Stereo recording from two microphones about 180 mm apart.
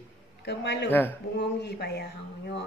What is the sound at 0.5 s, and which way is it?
Speech, 70° left (ahead or behind).